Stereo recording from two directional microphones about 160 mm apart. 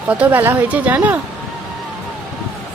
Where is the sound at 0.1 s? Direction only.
10° right (ahead or behind).